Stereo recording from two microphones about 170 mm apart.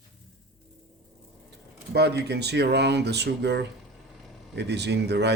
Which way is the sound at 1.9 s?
75° right (ahead or behind).